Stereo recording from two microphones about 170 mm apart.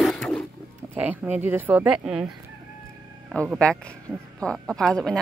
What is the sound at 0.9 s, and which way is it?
Speech, 10° right (ahead or behind).